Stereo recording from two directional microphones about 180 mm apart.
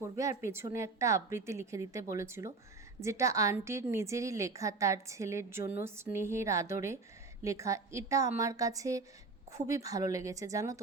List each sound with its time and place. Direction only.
0.0 s a woman's voice: 15° right (ahead or behind)